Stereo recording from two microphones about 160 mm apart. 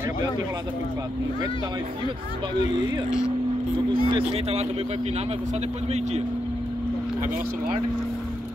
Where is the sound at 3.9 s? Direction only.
35° right (ahead or behind).